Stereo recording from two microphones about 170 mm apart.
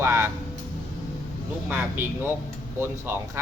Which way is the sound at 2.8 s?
15° right (ahead or behind).